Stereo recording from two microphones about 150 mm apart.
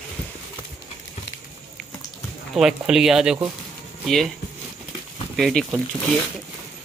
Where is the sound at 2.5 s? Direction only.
5° right (ahead or behind).